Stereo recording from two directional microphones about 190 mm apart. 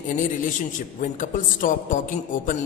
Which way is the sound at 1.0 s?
45° left (ahead or behind).